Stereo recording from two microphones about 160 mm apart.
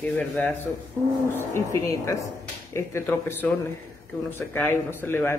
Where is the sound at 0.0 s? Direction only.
10° left (ahead or behind).